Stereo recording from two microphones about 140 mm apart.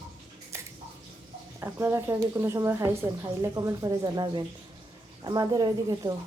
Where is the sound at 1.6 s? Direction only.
15° right (ahead or behind).